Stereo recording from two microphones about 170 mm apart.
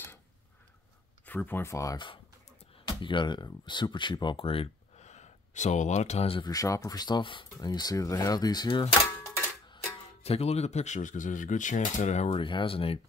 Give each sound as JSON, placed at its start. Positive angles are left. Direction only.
{"t": 1.2, "sound": "speech", "side_deg": 10}
{"t": 6.5, "sound": "speech", "side_deg": 20}
{"t": 10.2, "sound": "speech", "side_deg": 35}